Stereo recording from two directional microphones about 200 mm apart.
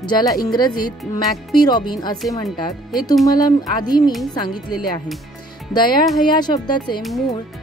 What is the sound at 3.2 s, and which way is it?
Speech, 20° left (ahead or behind).